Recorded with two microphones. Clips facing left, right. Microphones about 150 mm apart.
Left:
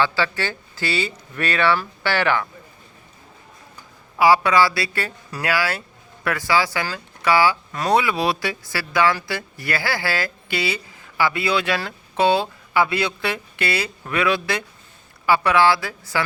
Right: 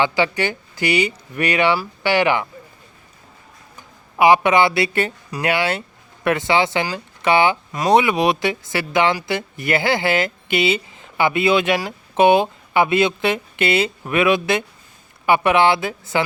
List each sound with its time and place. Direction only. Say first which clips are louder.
0.0 s speech: right 3 dB; 15° right (ahead or behind)
4.2 s speech: right 2 dB; 20° right (ahead or behind)